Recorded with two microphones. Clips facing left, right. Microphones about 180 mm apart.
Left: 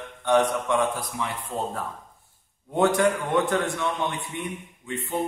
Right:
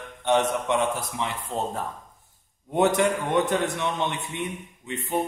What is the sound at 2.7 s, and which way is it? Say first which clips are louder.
A man's voice: even; 20° right (ahead or behind).